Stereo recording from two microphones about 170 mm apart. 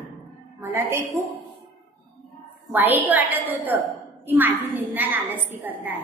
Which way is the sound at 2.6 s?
10° right (ahead or behind).